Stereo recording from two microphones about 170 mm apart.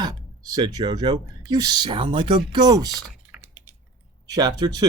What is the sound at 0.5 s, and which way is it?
Speech, 25° right (ahead or behind).